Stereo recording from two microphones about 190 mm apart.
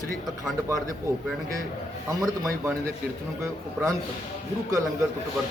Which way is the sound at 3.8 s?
5° right (ahead or behind).